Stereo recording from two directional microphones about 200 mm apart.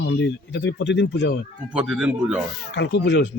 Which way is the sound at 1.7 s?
5° right (ahead or behind).